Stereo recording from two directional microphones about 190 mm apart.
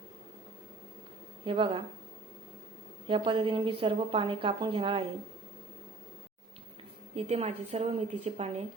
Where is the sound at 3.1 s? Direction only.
25° right (ahead or behind).